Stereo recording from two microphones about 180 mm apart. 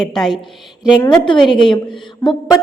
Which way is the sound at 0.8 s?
20° left (ahead or behind).